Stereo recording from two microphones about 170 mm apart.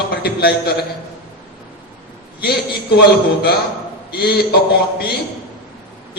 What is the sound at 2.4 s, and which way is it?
Speech, 65° left (ahead or behind).